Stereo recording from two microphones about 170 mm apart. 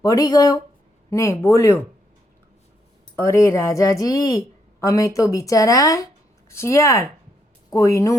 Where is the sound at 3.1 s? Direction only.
15° left (ahead or behind).